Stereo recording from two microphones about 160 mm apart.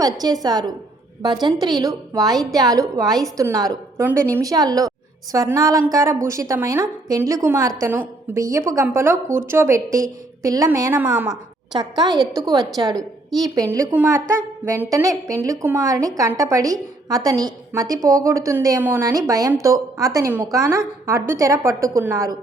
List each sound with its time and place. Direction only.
0.0 s a woman's voice: 25° right (ahead or behind)
11.7 s a woman's voice: 25° right (ahead or behind)